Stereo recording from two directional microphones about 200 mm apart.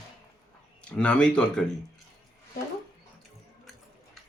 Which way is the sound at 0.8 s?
5° left (ahead or behind).